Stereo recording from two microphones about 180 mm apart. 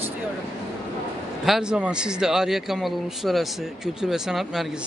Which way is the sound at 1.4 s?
5° right (ahead or behind).